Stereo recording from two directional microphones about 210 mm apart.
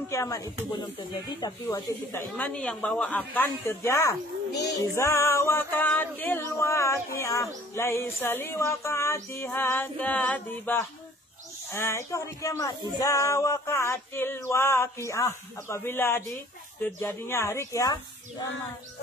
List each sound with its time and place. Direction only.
0.1 s music: 15° left (ahead or behind)
2.2 s music: 5° left (ahead or behind)